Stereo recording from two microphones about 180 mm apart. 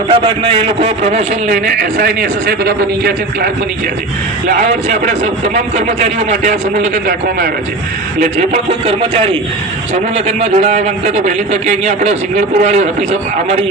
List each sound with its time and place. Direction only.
0.1 s a man's voice: 30° right (ahead or behind); by 3.5 s 60° right (ahead or behind)
4.6 s a man's voice: 40° right (ahead or behind)
7.1 s a man's voice: 55° right (ahead or behind)
8.9 s a man's voice: 35° right (ahead or behind)